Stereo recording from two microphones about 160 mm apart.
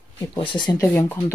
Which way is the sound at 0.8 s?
15° left (ahead or behind).